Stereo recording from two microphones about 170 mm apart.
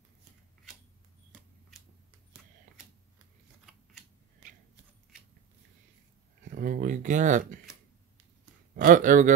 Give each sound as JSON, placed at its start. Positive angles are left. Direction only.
{"t": 6.5, "sound": "speech", "side_deg": -55}
{"t": 8.7, "sound": "speech", "side_deg": -50}